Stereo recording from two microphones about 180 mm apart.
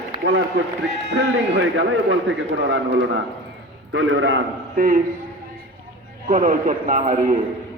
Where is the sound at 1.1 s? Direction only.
75° right (ahead or behind).